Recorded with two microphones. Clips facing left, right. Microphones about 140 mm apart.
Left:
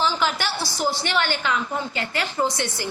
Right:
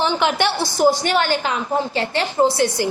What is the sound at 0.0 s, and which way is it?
Speech, 60° right (ahead or behind).